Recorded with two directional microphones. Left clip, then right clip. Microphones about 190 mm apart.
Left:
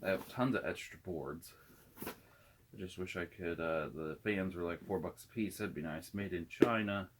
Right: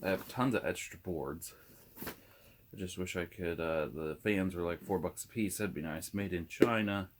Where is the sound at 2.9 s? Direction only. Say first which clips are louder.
Right 3 dB; 40° right (ahead or behind).